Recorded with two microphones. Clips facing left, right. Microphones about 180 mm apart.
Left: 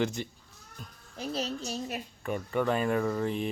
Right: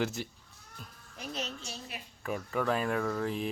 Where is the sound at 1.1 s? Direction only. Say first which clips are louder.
Left 6 dB; 30° left (ahead or behind).